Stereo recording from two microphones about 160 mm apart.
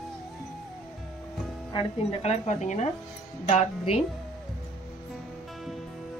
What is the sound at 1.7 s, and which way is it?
A woman's voice, 40° left (ahead or behind).